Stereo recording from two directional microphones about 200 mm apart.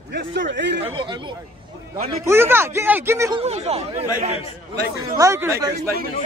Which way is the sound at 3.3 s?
30° right (ahead or behind).